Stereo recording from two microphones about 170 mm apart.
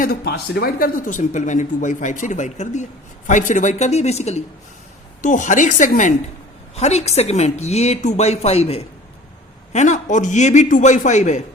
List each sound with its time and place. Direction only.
0.0 s a woman's voice: 65° left (ahead or behind); by 11.4 s 45° left (ahead or behind)